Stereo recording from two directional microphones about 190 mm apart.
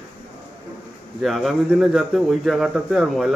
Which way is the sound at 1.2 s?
Centre (ahead or behind).